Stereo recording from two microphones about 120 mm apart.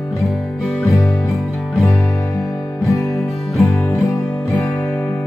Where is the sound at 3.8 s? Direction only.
25° left (ahead or behind).